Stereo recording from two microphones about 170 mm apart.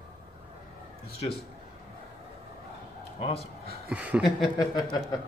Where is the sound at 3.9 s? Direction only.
5° right (ahead or behind).